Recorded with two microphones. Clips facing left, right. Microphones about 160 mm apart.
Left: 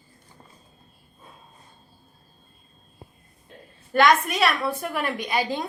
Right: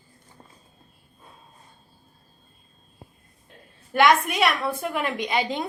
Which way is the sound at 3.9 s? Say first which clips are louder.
Even; 10° right (ahead or behind).